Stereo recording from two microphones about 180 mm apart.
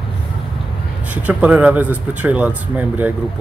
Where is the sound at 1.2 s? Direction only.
10° right (ahead or behind).